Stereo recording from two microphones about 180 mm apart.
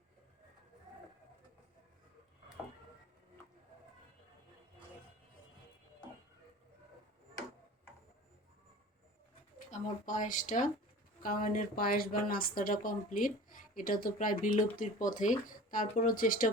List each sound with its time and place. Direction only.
9.7 s a woman's voice: 45° left (ahead or behind)